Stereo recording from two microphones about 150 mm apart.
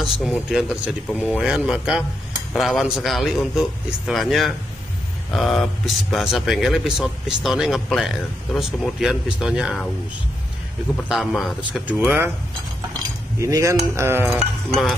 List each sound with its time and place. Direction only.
0.0 s speech: centre (ahead or behind)
11.1 s speech: centre (ahead or behind)
13.4 s cutlery: 20° right (ahead or behind)